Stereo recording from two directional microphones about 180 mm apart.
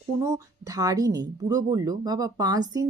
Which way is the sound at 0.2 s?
20° right (ahead or behind).